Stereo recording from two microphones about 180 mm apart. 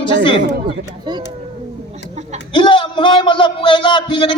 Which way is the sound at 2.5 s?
25° left (ahead or behind).